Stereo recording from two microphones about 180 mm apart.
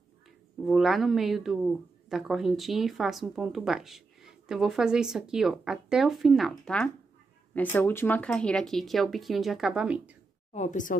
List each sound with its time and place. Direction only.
0.7 s speech: centre (ahead or behind)
10.5 s a woman's voice: 40° left (ahead or behind)